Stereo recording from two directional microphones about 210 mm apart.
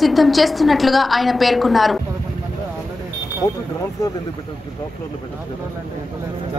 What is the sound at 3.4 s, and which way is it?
Speech, 15° left (ahead or behind).